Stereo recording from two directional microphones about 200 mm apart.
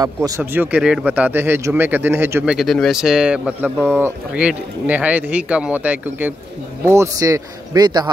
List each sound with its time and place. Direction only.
0.0 s speech: 15° right (ahead or behind)
2.5 s a man's voice: centre (ahead or behind); by 8.1 s 20° right (ahead or behind)